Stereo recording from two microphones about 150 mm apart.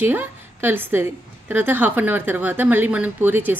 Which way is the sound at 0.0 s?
15° right (ahead or behind).